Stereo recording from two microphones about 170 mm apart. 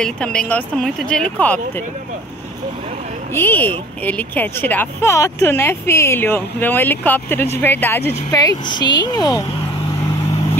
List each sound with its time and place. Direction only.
0.0 s speech: 5° left (ahead or behind)
3.3 s speech: 10° left (ahead or behind)